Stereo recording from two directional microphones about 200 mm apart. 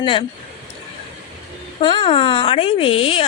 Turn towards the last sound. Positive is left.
turn(degrees=25)  # may be behind; listen again after turning